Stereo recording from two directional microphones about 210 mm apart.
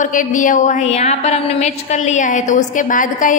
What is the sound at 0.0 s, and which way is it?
A woman's voice, 40° left (ahead or behind).